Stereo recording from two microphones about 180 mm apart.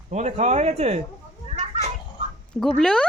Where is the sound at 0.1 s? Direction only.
40° right (ahead or behind).